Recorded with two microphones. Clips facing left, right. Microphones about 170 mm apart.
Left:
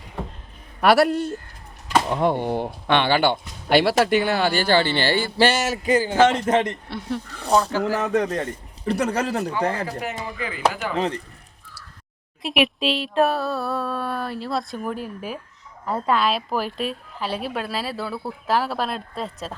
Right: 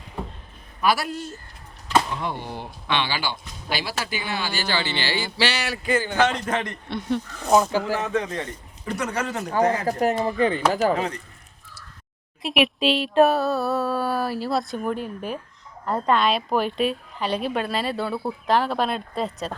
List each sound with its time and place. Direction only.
0.8 s speech: 65° left (ahead or behind); by 5.7 s 50° left (ahead or behind)
5.8 s a man's voice: 35° left (ahead or behind)
7.5 s speech: 10° right (ahead or behind)
7.9 s a man's voice: 40° left (ahead or behind)
9.5 s speech: 40° right (ahead or behind)
12.4 s a sound: centre (ahead or behind)